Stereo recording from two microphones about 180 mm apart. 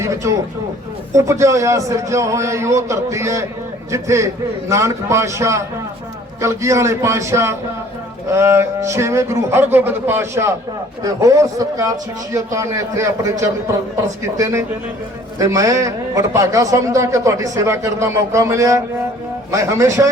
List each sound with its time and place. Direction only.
0.0 s a man's voice: 15° right (ahead or behind)